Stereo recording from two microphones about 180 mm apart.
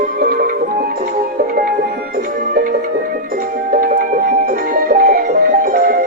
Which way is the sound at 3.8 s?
50° right (ahead or behind).